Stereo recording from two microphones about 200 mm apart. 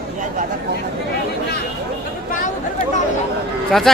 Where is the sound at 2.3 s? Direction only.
40° left (ahead or behind).